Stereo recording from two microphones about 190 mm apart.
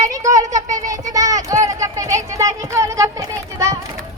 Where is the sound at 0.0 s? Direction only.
15° right (ahead or behind).